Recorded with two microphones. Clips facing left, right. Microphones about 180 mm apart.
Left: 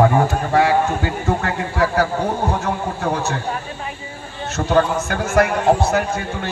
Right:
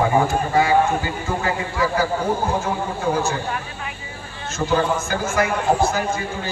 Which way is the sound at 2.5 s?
70° left (ahead or behind).